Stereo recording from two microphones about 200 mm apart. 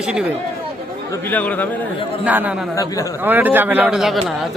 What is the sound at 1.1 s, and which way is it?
Speech, 10° left (ahead or behind).